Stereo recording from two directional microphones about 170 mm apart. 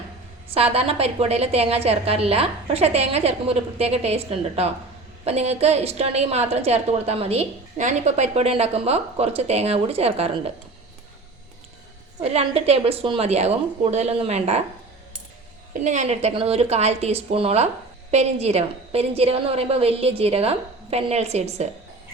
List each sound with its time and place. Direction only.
0.5 s a woman's voice: 35° right (ahead or behind)
12.2 s a woman's voice: 35° right (ahead or behind)
15.7 s a woman's voice: 45° right (ahead or behind)